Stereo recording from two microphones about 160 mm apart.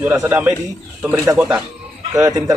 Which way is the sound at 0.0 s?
10° right (ahead or behind).